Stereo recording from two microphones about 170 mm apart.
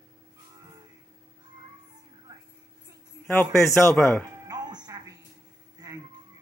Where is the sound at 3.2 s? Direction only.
10° left (ahead or behind).